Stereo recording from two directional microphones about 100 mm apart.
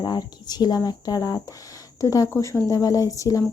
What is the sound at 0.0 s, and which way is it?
Speech, 40° left (ahead or behind).